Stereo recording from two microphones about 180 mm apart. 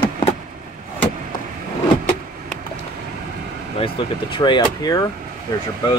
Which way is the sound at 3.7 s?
30° left (ahead or behind).